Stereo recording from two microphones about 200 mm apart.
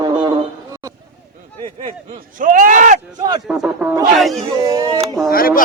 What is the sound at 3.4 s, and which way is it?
A man's voice, centre (ahead or behind).